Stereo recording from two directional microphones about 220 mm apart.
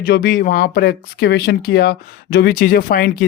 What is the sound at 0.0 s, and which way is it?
Speech, 40° left (ahead or behind).